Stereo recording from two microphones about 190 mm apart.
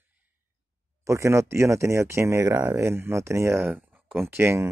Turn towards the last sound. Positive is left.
turn(degrees=-15)  # may be behind; listen again after turning